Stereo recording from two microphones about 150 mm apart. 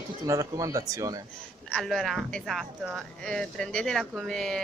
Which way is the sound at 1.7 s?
Centre (ahead or behind).